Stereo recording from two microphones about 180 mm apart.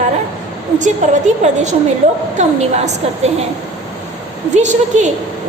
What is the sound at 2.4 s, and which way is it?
Speech, 40° right (ahead or behind).